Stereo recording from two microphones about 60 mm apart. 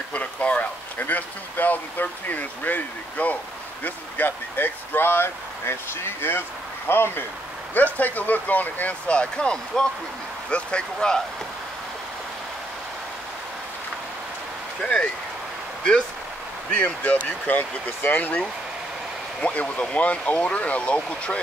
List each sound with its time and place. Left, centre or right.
0.1 s speech: left
14.8 s speech: centre
16.7 s speech: left
19.4 s speech: left